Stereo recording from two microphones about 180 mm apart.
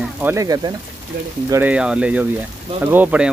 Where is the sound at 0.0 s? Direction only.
10° right (ahead or behind).